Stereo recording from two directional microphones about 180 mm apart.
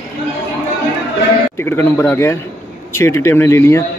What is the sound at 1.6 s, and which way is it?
Speech, 15° left (ahead or behind).